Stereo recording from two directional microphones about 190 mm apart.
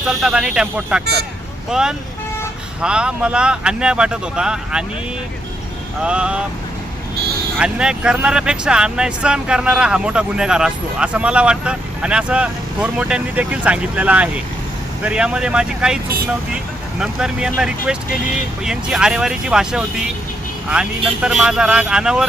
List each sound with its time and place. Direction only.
0.0 s speech: 5° right (ahead or behind)
6.0 s speech: 5° right (ahead or behind)
7.6 s speech: 5° right (ahead or behind)
17.0 s speech: 5° right (ahead or behind)